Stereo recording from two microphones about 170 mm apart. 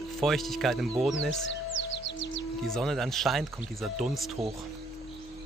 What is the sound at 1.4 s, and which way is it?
Music, 90° left.